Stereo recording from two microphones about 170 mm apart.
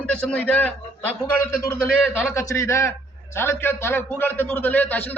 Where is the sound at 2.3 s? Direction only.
15° left (ahead or behind).